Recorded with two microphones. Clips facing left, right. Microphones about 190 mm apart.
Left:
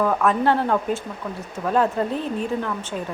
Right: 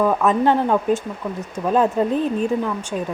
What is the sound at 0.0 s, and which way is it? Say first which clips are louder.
Speech: right 3 dB; 15° right (ahead or behind).